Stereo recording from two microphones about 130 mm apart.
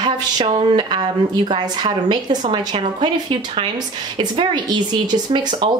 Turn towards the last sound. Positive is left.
turn(degrees=-35)  # may be behind; listen again after turning